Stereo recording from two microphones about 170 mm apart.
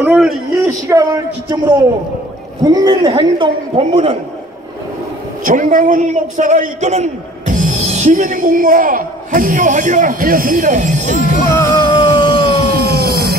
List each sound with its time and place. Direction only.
0.0 s a man's voice: 10° right (ahead or behind)
0.7 s a man's voice: 20° right (ahead or behind)
5.4 s a man's voice: 50° right (ahead or behind)
11.6 s music: 20° left (ahead or behind)
12.3 s music: 65° right (ahead or behind)